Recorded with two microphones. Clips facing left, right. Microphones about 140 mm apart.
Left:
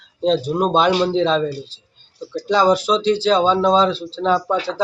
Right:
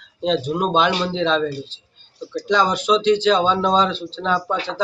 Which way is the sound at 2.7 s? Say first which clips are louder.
Even; 35° left (ahead or behind).